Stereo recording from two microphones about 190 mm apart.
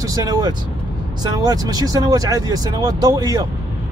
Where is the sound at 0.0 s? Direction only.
20° right (ahead or behind).